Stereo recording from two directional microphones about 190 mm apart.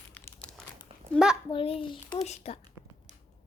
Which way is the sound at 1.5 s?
30° left (ahead or behind).